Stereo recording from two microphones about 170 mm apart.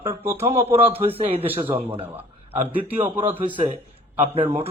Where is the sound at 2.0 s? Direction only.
10° right (ahead or behind).